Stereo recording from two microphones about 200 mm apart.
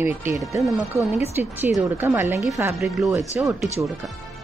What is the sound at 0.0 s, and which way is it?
Speech, 10° right (ahead or behind).